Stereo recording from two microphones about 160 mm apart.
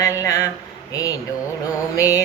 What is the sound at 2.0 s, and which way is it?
Music, 20° left (ahead or behind).